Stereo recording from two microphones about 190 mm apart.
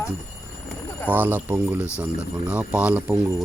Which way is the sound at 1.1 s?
10° right (ahead or behind).